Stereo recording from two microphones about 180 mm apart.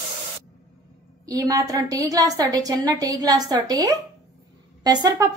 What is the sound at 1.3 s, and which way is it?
A woman's voice, 20° right (ahead or behind).